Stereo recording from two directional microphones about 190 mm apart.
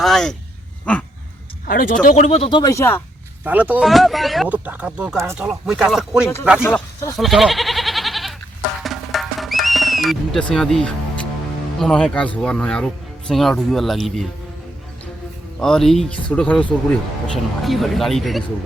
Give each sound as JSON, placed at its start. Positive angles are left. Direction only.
{"t": 0.0, "sound": "speech", "side_deg": 0}
{"t": 1.6, "sound": "speech", "side_deg": 45}
{"t": 3.4, "sound": "speech", "side_deg": -10}
{"t": 6.6, "sound": "speech", "side_deg": 10}
{"t": 7.2, "sound": "goat", "side_deg": 0}
{"t": 8.8, "sound": "music", "side_deg": 0}
{"t": 11.8, "sound": "speech", "side_deg": 5}
{"t": 15.6, "sound": "speech", "side_deg": 0}